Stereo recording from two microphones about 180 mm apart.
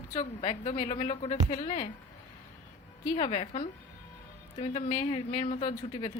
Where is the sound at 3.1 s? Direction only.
35° left (ahead or behind).